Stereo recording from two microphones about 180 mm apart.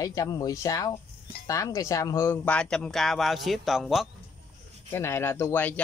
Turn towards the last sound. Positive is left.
turn(degrees=10)  # may be behind; listen again after turning